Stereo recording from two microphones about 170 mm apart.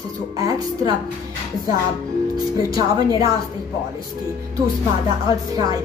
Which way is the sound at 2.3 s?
20° right (ahead or behind).